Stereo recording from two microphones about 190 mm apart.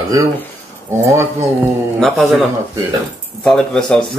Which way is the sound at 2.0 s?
Centre (ahead or behind).